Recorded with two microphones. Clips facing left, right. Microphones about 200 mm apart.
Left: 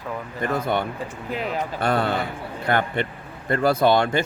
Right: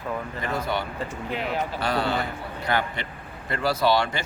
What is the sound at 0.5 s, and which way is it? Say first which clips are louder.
Speech: left 4 dB; 55° left (ahead or behind).